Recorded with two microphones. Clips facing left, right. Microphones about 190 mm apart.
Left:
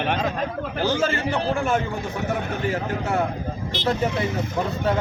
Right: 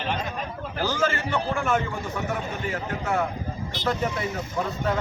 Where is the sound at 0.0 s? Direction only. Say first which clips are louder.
Left 5 dB; 60° left (ahead or behind).